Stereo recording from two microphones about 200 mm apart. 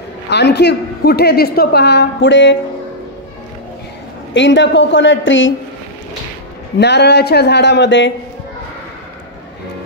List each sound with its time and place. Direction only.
0.3 s a woman's voice: 60° left (ahead or behind)
4.3 s a woman's voice: 65° left (ahead or behind)
6.8 s a woman's voice: 60° left (ahead or behind)